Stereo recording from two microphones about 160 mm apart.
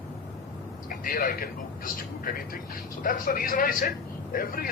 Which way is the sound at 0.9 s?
60° left (ahead or behind).